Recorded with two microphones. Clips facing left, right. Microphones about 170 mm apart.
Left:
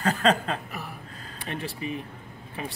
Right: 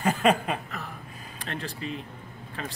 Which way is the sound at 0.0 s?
15° right (ahead or behind).